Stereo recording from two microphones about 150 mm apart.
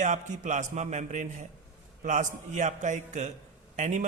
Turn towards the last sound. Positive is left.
turn(degrees=-50)  # may be behind; listen again after turning